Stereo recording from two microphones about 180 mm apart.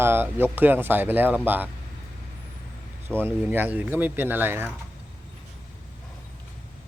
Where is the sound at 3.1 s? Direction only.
10° right (ahead or behind).